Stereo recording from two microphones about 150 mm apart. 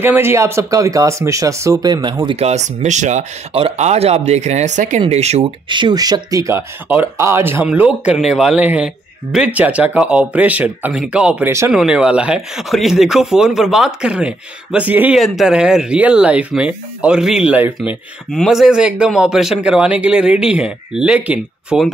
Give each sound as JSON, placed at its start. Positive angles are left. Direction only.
{"t": 0.0, "sound": "speech", "side_deg": -15}
{"t": 5.7, "sound": "speech", "side_deg": -30}
{"t": 11.7, "sound": "speech", "side_deg": -5}
{"t": 17.7, "sound": "speech", "side_deg": 0}